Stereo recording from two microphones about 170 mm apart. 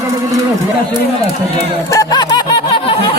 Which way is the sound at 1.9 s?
25° left (ahead or behind).